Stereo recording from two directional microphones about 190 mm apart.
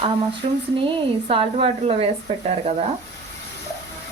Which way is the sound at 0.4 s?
30° right (ahead or behind).